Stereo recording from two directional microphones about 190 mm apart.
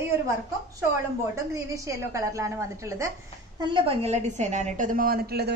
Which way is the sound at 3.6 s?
25° right (ahead or behind).